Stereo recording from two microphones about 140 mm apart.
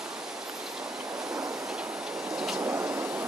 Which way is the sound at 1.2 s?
25° right (ahead or behind).